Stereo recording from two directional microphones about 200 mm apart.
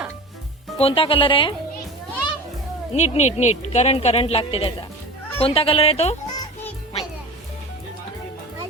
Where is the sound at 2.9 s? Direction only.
35° left (ahead or behind).